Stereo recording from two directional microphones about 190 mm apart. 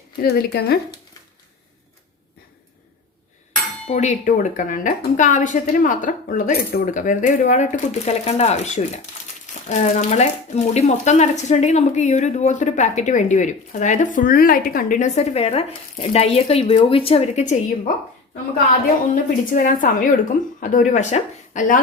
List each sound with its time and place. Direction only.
0.2 s speech: 60° left (ahead or behind)
3.8 s speech: 40° left (ahead or behind)
19.1 s a woman's voice: 45° left (ahead or behind)